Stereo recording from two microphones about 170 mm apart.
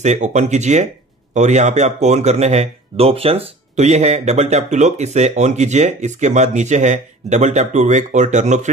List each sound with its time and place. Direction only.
0.0 s speech: 45° right (ahead or behind)